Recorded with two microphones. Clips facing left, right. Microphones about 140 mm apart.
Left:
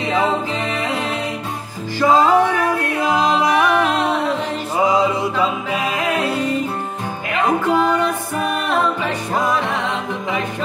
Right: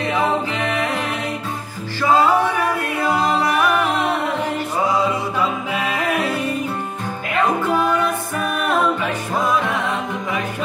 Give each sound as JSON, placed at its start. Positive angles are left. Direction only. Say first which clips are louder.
{"t": 0.0, "sound": "music", "louder": "left 1 dB", "side_deg": 15}
{"t": 4.7, "sound": "music", "louder": "left 4 dB", "side_deg": 15}